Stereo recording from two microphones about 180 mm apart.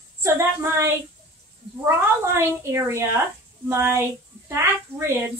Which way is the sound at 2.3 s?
15° right (ahead or behind).